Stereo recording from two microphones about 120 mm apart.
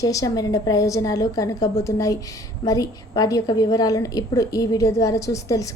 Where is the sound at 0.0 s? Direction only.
30° left (ahead or behind).